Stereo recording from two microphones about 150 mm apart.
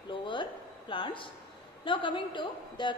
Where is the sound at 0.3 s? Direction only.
35° left (ahead or behind).